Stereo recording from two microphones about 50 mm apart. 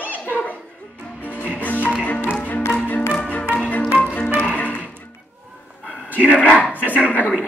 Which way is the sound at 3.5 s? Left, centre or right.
Left.